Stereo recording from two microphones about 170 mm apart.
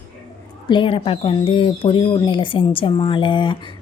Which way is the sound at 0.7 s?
30° left (ahead or behind).